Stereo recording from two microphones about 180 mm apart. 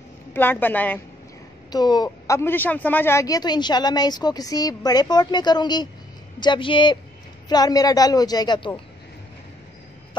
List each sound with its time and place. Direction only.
0.3 s a woman's voice: 10° left (ahead or behind)
1.7 s a woman's voice: 25° left (ahead or behind)